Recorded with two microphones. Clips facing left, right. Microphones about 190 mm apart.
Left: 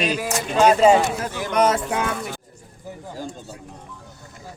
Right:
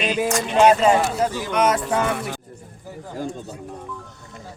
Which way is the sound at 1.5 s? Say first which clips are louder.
Left 2 dB; 35° left (ahead or behind).